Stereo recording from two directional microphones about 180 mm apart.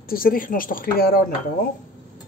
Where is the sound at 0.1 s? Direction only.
55° left (ahead or behind).